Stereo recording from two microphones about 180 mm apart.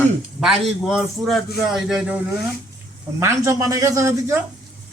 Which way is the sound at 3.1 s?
15° right (ahead or behind).